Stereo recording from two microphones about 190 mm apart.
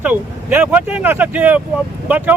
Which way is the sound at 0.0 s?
10° right (ahead or behind).